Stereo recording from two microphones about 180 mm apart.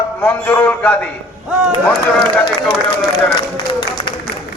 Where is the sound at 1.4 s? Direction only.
Centre (ahead or behind).